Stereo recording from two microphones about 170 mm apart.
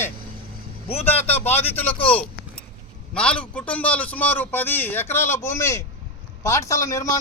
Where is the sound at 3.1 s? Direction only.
5° left (ahead or behind).